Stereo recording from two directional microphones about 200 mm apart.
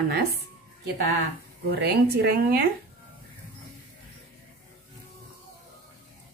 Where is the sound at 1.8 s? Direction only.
55° right (ahead or behind).